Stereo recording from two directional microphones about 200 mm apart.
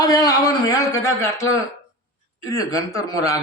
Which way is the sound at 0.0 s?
20° left (ahead or behind).